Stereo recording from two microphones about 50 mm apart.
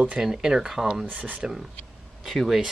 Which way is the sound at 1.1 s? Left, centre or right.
Right.